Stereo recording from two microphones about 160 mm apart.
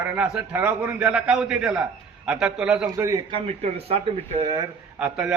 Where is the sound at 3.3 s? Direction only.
40° right (ahead or behind).